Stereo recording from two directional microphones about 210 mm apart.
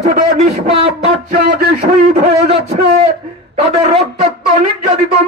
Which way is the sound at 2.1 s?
30° right (ahead or behind).